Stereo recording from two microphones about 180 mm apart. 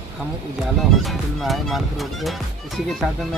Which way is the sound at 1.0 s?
Centre (ahead or behind).